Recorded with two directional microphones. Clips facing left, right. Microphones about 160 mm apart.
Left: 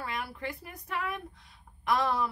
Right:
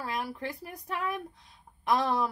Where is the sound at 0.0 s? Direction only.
35° right (ahead or behind).